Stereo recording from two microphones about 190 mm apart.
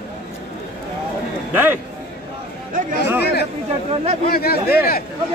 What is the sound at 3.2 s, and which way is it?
Speech, 60° left (ahead or behind).